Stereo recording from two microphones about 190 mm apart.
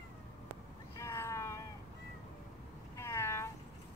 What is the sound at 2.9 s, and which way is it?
Cat, 15° left (ahead or behind).